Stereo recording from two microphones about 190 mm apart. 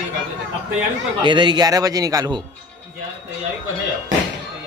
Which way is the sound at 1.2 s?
25° right (ahead or behind).